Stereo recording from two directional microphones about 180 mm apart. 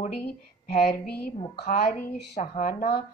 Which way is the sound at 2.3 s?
40° left (ahead or behind).